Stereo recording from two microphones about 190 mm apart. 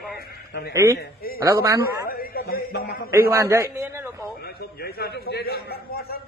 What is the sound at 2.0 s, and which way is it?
A man's voice, 50° left (ahead or behind).